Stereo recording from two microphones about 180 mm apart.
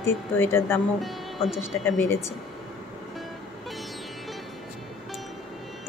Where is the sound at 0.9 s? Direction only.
Centre (ahead or behind).